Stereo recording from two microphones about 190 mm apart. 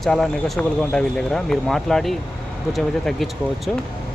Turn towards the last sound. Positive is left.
turn(degrees=0)  # may be behind; listen again after turning